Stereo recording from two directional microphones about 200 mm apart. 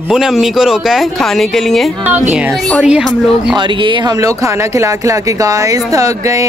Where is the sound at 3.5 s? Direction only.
25° right (ahead or behind).